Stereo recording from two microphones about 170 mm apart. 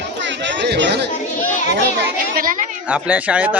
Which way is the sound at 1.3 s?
45° left (ahead or behind).